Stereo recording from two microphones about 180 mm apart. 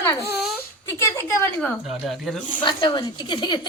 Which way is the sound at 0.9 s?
15° left (ahead or behind).